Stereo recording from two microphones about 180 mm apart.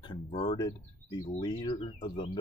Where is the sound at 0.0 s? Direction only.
25° left (ahead or behind).